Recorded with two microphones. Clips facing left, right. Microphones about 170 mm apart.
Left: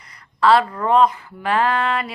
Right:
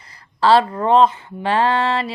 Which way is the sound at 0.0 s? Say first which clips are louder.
Even; 30° right (ahead or behind).